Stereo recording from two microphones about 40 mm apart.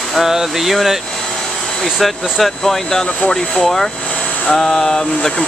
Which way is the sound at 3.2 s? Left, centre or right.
Centre.